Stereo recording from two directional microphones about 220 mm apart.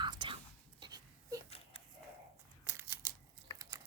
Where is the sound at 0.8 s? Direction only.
15° right (ahead or behind).